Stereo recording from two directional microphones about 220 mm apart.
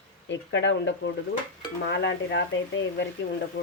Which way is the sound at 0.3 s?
55° left (ahead or behind).